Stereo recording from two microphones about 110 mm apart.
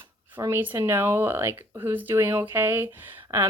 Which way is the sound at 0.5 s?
20° right (ahead or behind).